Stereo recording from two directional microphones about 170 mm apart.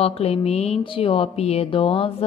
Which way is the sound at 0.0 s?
35° left (ahead or behind).